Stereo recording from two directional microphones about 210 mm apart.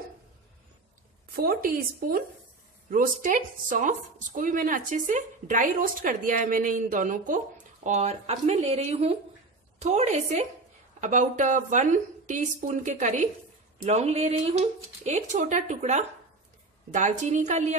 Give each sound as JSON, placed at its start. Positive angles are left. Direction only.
{"t": 1.3, "sound": "a woman's voice", "side_deg": -45}